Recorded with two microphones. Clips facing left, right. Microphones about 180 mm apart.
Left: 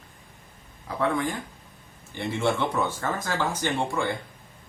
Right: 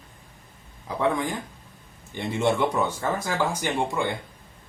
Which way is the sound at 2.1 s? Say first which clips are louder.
Right 2 dB; 20° right (ahead or behind).